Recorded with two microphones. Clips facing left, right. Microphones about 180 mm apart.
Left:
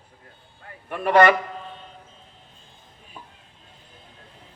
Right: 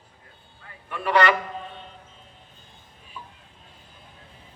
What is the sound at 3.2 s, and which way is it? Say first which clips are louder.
Stir: right 2 dB; 55° left (ahead or behind).